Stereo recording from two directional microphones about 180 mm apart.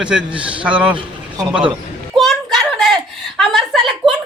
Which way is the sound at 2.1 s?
Centre (ahead or behind).